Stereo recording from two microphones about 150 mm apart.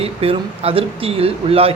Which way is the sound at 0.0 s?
40° right (ahead or behind).